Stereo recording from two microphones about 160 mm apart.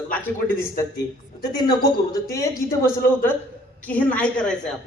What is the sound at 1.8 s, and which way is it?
A man's voice, 20° left (ahead or behind).